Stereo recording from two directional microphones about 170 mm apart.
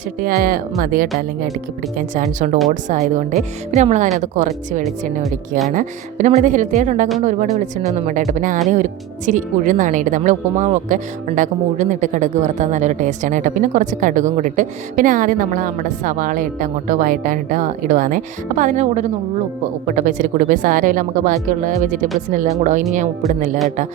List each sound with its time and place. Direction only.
0.2 s speech: 55° right (ahead or behind)
5.2 s speech: centre (ahead or behind)
5.7 s speech: 45° right (ahead or behind)